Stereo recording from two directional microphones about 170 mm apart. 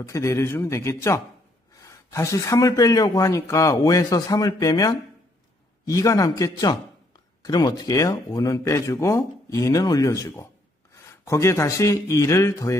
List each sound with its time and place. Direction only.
0.0 s speech: 15° left (ahead or behind)